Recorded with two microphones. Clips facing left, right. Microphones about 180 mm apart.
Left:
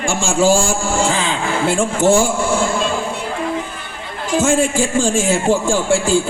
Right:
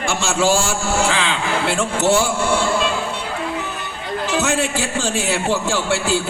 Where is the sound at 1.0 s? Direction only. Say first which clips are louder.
Left 2 dB; 45° left (ahead or behind).